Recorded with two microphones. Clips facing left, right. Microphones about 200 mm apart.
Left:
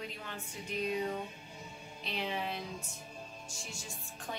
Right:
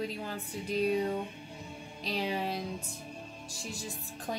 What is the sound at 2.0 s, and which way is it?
Speech, 35° right (ahead or behind).